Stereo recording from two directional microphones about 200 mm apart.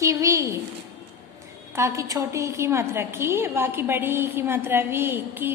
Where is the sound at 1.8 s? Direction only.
15° right (ahead or behind).